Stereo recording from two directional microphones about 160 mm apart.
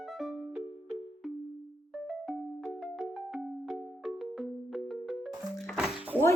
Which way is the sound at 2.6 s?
Centre (ahead or behind).